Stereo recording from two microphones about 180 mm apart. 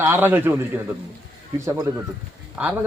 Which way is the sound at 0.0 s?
10° right (ahead or behind).